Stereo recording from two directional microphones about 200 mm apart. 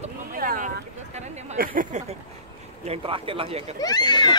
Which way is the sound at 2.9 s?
25° right (ahead or behind).